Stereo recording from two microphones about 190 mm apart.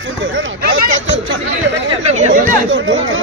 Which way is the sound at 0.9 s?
80° right.